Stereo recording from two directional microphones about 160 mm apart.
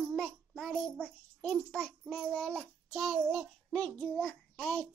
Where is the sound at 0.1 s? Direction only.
Centre (ahead or behind).